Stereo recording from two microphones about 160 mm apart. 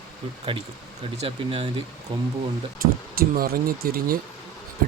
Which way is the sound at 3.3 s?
70° right (ahead or behind).